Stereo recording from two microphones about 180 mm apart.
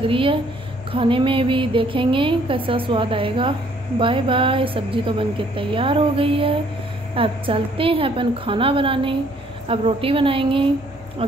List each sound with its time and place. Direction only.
0.0 s a woman's voice: 30° right (ahead or behind)